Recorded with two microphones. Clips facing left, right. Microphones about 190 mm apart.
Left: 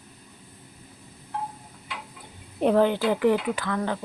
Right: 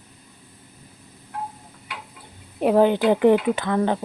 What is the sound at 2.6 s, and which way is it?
Speech, 15° right (ahead or behind).